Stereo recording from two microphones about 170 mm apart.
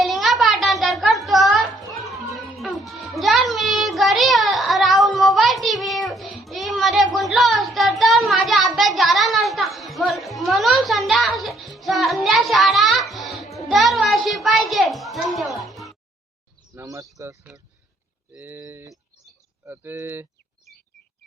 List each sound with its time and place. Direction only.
0.0 s music: centre (ahead or behind)
6.4 s child singing: centre (ahead or behind)
16.7 s a sound: 20° right (ahead or behind)
17.2 s speech: 15° right (ahead or behind)
18.3 s a sound: 10° right (ahead or behind)
19.6 s speech: 10° right (ahead or behind)